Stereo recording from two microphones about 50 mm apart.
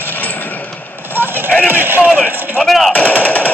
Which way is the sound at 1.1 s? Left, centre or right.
Right.